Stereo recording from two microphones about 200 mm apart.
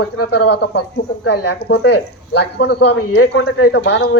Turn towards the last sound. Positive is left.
turn(degrees=60)  # may be behind; listen again after turning